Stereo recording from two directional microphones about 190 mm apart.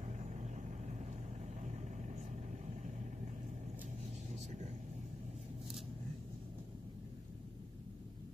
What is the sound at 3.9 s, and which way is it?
Vehicle, 35° right (ahead or behind).